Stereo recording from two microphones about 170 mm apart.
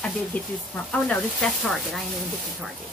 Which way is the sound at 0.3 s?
10° left (ahead or behind).